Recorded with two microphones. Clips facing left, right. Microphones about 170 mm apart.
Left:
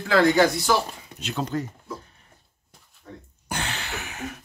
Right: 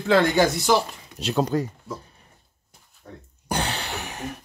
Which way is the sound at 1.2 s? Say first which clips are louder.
Right 5 dB; 35° right (ahead or behind).